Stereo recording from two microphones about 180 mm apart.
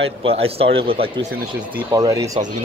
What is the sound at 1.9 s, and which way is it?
Speech, 20° right (ahead or behind).